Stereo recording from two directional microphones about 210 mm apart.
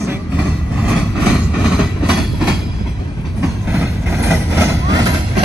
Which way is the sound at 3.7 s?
10° right (ahead or behind).